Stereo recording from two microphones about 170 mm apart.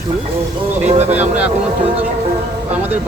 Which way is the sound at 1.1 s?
10° right (ahead or behind).